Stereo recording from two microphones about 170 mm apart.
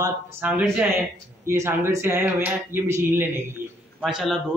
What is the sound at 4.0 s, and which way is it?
Speech, centre (ahead or behind).